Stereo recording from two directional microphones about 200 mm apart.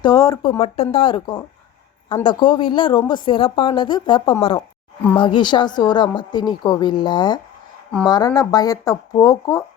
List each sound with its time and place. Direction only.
0.0 s speech: 15° left (ahead or behind)
0.6 s a woman's voice: 30° left (ahead or behind)